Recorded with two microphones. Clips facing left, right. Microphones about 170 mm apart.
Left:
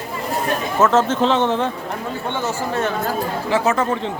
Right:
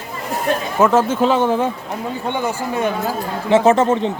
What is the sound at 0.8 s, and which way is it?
Speech, 10° right (ahead or behind).